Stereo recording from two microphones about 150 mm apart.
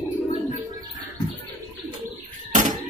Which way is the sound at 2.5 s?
60° right (ahead or behind).